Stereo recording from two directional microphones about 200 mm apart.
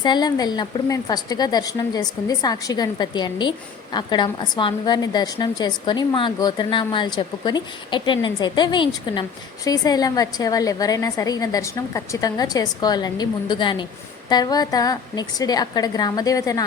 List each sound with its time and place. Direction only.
0.0 s a woman's voice: 20° left (ahead or behind)